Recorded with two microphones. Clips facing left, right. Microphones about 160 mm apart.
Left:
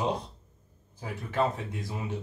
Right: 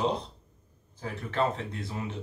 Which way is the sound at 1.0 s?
10° left (ahead or behind).